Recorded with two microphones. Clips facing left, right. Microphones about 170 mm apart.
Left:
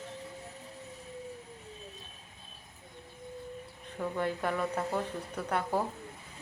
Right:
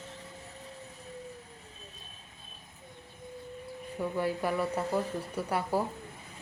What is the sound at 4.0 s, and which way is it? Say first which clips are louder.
Speech: right 1 dB; 10° right (ahead or behind).